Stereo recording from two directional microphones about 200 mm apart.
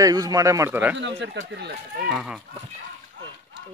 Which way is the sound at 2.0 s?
5° right (ahead or behind).